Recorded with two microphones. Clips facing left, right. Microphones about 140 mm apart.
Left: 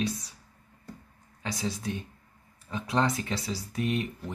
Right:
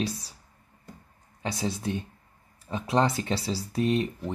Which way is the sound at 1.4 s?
25° right (ahead or behind).